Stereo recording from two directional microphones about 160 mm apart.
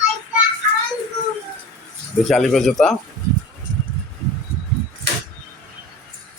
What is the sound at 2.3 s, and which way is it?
Speech, centre (ahead or behind).